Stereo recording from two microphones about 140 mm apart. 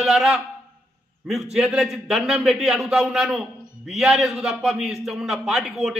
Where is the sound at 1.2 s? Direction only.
Centre (ahead or behind).